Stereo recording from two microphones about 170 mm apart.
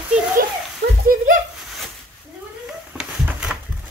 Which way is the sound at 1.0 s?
55° right (ahead or behind).